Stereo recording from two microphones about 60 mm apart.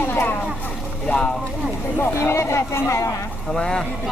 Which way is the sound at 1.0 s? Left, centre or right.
Left.